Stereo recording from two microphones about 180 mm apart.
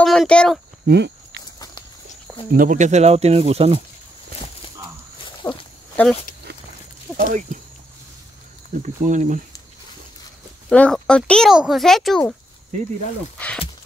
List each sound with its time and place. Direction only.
0.0 s speech: centre (ahead or behind)
0.8 s a sound: 70° right (ahead or behind)
2.5 s speech: 50° right (ahead or behind)
5.4 s speech: 10° left (ahead or behind)
7.2 s speech: 45° right (ahead or behind)
8.8 s speech: 45° right (ahead or behind)
10.7 s speech: 5° left (ahead or behind)